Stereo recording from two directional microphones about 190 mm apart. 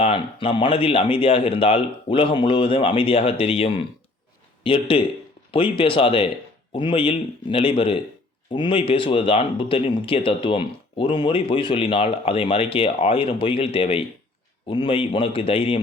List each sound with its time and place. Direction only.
0.0 s speech: 30° left (ahead or behind)